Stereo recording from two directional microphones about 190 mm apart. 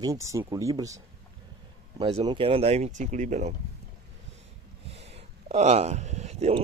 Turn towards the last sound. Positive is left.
turn(degrees=-35)  # may be behind; listen again after turning